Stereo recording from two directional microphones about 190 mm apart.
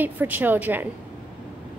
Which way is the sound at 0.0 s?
10° right (ahead or behind).